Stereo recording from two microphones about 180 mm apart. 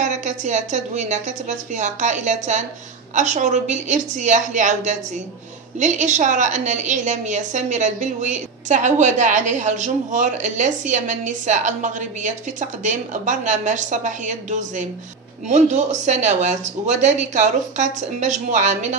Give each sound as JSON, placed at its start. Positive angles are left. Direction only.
{"t": 0.0, "sound": "a woman's voice", "side_deg": -40}
{"t": 15.4, "sound": "a woman's voice", "side_deg": -40}